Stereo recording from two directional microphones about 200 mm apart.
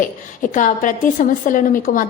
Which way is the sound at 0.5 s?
40° left (ahead or behind).